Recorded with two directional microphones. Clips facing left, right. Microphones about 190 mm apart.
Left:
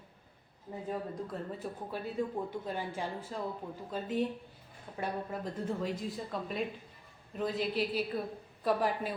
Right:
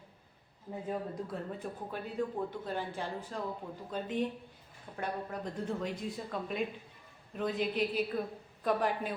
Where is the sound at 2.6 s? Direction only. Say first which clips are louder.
Even; 10° left (ahead or behind).